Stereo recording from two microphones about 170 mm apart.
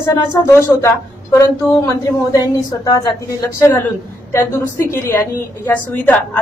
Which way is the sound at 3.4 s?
15° left (ahead or behind).